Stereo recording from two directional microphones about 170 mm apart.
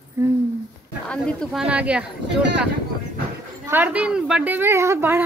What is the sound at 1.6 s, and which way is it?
Speech, 5° right (ahead or behind).